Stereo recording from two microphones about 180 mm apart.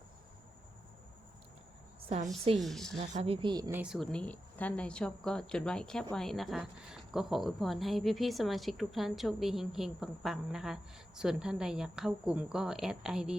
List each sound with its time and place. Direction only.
2.0 s speech: 35° right (ahead or behind)
2.6 s speech: centre (ahead or behind)
3.0 s speech: 35° right (ahead or behind)
3.7 s speech: 5° right (ahead or behind)